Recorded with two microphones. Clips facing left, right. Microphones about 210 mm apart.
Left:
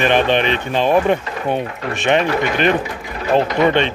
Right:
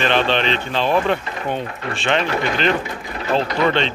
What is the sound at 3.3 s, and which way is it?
Speech, 15° left (ahead or behind).